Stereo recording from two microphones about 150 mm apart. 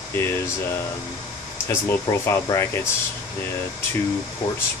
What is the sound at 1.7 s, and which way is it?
Speech, 15° left (ahead or behind).